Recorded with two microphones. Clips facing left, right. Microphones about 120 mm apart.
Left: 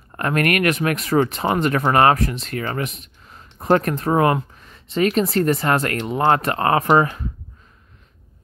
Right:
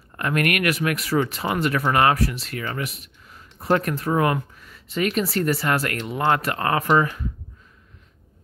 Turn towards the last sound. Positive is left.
turn(degrees=35)  # may be behind; listen again after turning